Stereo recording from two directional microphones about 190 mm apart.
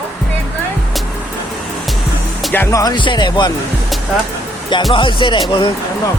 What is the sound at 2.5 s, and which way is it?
Speech, 10° left (ahead or behind).